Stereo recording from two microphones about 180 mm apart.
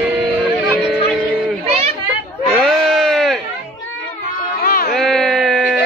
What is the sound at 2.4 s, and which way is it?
Sheep, centre (ahead or behind).